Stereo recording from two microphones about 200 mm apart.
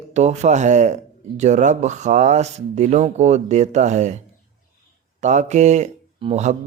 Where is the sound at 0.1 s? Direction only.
35° right (ahead or behind).